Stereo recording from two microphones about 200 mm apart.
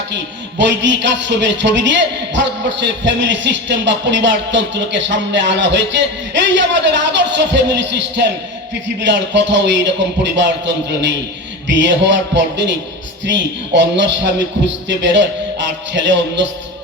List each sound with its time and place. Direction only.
0.6 s a man's voice: 65° right (ahead or behind)
11.7 s a man's voice: 65° right (ahead or behind)